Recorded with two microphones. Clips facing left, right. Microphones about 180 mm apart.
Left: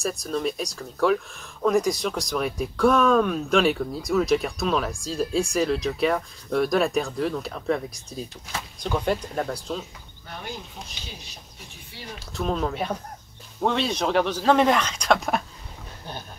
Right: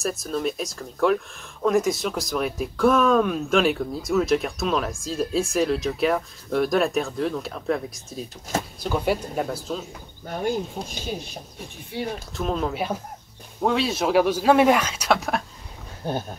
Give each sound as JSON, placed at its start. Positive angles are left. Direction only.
{"t": 0.0, "sound": "speech", "side_deg": 0}
{"t": 10.2, "sound": "speech", "side_deg": -45}
{"t": 12.4, "sound": "speech", "side_deg": 0}